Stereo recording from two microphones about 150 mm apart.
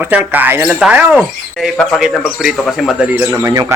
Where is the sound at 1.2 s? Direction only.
5° left (ahead or behind).